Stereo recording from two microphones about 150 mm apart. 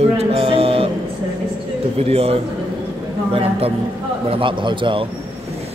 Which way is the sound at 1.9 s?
40° right (ahead or behind).